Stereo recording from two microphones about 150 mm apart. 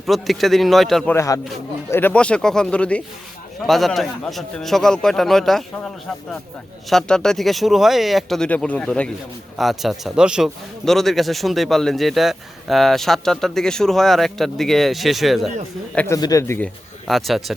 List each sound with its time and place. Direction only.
0.0 s speech: centre (ahead or behind)
1.1 s speech: 20° left (ahead or behind); by 5.9 s centre (ahead or behind)
6.9 s speech: 5° left (ahead or behind)
16.0 s speech: 20° left (ahead or behind)
17.1 s speech: centre (ahead or behind)